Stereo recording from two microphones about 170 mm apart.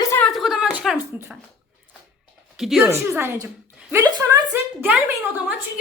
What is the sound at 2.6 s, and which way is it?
Speech, centre (ahead or behind).